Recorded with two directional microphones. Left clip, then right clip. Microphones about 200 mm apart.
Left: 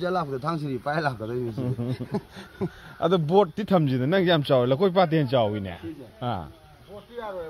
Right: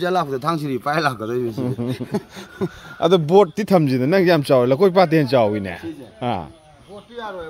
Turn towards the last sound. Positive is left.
turn(degrees=-20)  # may be behind; listen again after turning